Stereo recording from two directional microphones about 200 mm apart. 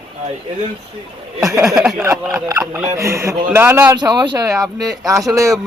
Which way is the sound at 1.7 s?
5° right (ahead or behind).